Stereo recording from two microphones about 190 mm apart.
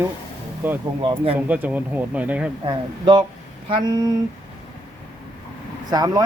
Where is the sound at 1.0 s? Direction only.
30° right (ahead or behind).